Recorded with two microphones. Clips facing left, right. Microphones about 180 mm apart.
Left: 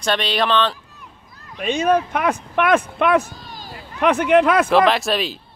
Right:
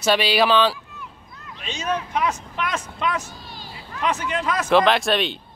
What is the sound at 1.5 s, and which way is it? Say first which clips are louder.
Speech: left 9 dB; 55° left (ahead or behind).